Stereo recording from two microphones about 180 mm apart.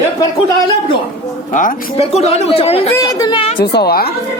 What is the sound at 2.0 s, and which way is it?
Speech, 35° left (ahead or behind).